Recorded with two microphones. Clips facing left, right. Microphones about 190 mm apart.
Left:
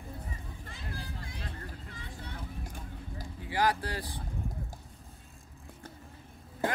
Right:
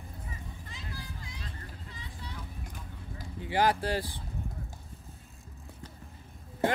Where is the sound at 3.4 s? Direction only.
25° right (ahead or behind).